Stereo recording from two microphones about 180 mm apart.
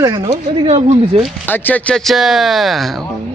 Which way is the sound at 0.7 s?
35° right (ahead or behind).